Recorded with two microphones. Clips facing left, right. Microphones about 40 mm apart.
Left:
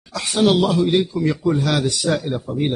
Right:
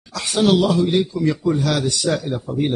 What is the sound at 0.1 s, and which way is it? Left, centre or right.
Speech, centre.